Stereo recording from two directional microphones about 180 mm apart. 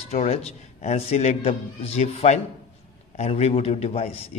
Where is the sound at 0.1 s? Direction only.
35° left (ahead or behind).